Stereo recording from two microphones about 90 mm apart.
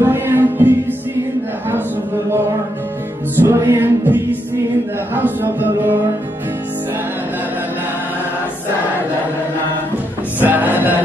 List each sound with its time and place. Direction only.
0.0 s music: 25° right (ahead or behind)
3.3 s music: 30° right (ahead or behind)
10.4 s music: 20° right (ahead or behind)